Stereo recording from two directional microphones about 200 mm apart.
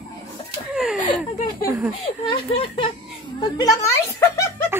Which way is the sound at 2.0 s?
30° left (ahead or behind).